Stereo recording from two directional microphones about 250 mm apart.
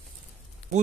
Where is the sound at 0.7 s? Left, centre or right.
Right.